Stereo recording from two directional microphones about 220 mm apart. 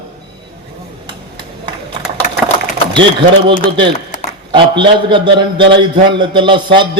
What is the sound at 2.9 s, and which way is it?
A man's voice, 20° right (ahead or behind).